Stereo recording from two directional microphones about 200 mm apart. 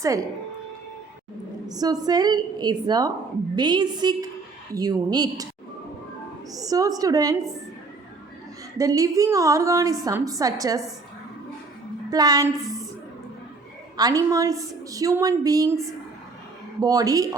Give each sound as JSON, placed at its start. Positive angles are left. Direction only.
{"t": 1.6, "sound": "a woman's voice", "side_deg": -20}
{"t": 6.5, "sound": "a woman's voice", "side_deg": -15}
{"t": 8.8, "sound": "a woman's voice", "side_deg": -15}
{"t": 12.1, "sound": "a woman's voice", "side_deg": -20}
{"t": 13.9, "sound": "a woman's voice", "side_deg": -20}
{"t": 16.8, "sound": "a woman's voice", "side_deg": -20}